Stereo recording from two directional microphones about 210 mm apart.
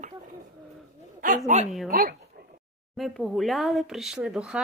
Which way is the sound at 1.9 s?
45° right (ahead or behind).